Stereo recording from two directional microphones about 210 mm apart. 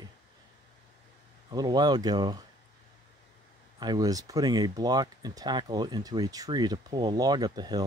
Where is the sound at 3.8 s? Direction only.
20° right (ahead or behind).